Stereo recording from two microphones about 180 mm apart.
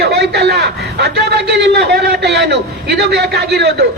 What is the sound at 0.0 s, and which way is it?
A man's voice, 70° right (ahead or behind).